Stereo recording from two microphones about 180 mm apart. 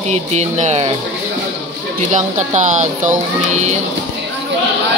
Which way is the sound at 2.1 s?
40° right (ahead or behind).